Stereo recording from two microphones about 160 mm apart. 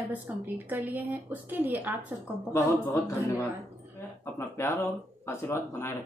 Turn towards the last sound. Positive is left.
turn(degrees=15)  # may be behind; listen again after turning